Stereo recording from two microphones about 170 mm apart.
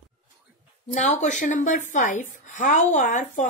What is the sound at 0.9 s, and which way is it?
A woman's voice, 45° left (ahead or behind).